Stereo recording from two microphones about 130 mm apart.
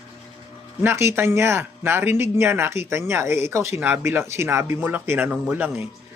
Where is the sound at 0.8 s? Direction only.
20° right (ahead or behind).